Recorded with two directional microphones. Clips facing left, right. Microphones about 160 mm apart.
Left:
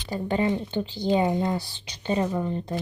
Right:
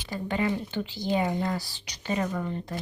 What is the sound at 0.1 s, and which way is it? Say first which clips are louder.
Speech: left 3 dB; 35° left (ahead or behind).